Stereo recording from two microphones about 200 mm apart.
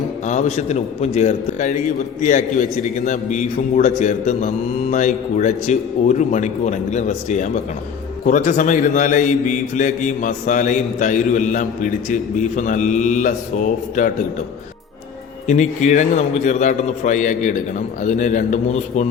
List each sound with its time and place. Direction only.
0.3 s a man's voice: 35° left (ahead or behind)
15.4 s a man's voice: 35° left (ahead or behind)